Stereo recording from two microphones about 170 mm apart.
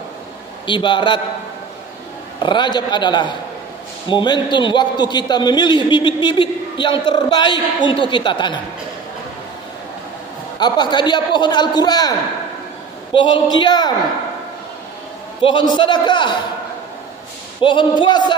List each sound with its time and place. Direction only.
0.7 s a man's voice: 30° left (ahead or behind)
2.4 s a man's voice: 25° left (ahead or behind)
10.6 s a man's voice: 25° left (ahead or behind)
13.1 s a man's voice: 30° left (ahead or behind)
15.4 s a man's voice: 25° left (ahead or behind)
17.6 s a man's voice: 30° left (ahead or behind)